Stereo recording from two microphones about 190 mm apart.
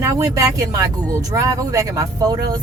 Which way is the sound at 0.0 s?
15° right (ahead or behind).